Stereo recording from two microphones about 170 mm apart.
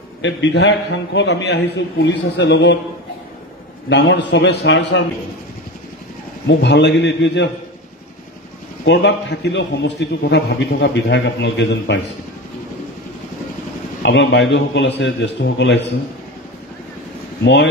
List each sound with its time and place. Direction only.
0.2 s a man's voice: 90° left
3.9 s a man's voice: 90° left
6.4 s a man's voice: 90° left
8.8 s a man's voice: 90° left
14.0 s a man's voice: 90° left